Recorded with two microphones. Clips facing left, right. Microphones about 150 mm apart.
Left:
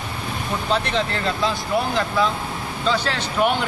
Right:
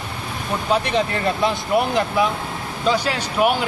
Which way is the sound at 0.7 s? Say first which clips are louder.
Right 3 dB; 15° right (ahead or behind).